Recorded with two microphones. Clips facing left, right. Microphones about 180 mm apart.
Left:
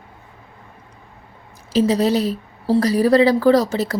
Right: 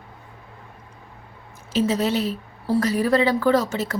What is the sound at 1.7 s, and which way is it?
A woman's voice, 35° left (ahead or behind).